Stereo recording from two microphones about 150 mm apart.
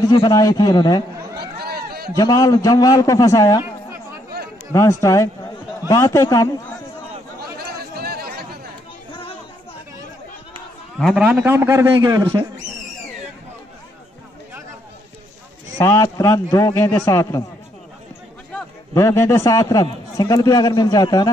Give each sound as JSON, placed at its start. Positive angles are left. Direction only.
{"t": 0.1, "sound": "a man's voice", "side_deg": 25}
{"t": 1.4, "sound": "a sound", "side_deg": -90}
{"t": 2.1, "sound": "a man's voice", "side_deg": 25}
{"t": 4.7, "sound": "a man's voice", "side_deg": 20}
{"t": 7.3, "sound": "chatter", "side_deg": -90}
{"t": 11.0, "sound": "a man's voice", "side_deg": 5}
{"t": 11.2, "sound": "a man's voice", "side_deg": -15}
{"t": 15.8, "sound": "a man's voice", "side_deg": 20}
{"t": 18.9, "sound": "a man's voice", "side_deg": 20}